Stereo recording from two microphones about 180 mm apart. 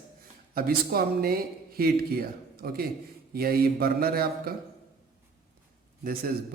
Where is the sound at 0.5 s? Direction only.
60° right (ahead or behind).